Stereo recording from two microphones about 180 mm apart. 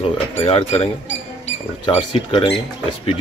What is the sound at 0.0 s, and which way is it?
Speech, 30° left (ahead or behind).